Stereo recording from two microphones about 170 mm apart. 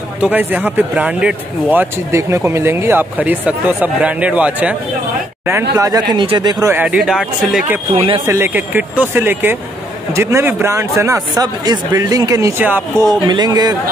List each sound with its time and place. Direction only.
0.2 s speech: 10° right (ahead or behind)
6.7 s speech: 10° right (ahead or behind)
7.9 s speech: 30° right (ahead or behind)
8.3 s speech: 10° right (ahead or behind)
13.1 s speech: 25° right (ahead or behind)